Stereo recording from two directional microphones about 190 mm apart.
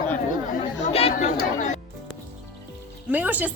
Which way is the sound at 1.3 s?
40° left (ahead or behind).